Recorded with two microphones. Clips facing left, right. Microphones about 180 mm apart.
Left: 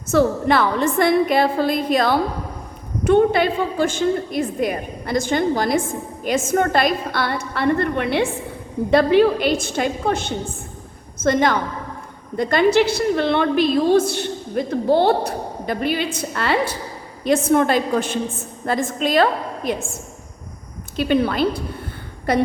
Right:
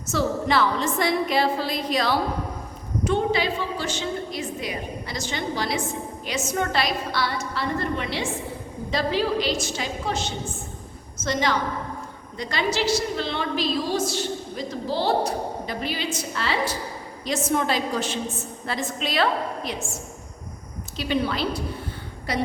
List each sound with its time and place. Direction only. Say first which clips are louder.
0.1 s a woman's voice: left 6 dB; 55° left (ahead or behind)